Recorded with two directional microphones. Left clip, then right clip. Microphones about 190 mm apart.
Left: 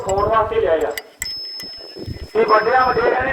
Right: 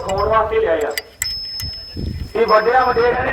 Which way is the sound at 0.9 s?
20° left (ahead or behind).